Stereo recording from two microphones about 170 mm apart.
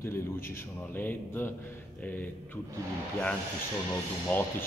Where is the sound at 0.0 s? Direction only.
15° left (ahead or behind).